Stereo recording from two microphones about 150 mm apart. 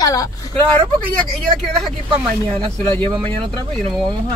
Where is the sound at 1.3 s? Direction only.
Centre (ahead or behind).